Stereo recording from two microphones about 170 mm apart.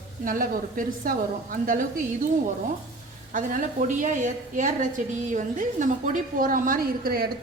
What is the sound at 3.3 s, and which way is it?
A woman's voice, 50° right (ahead or behind).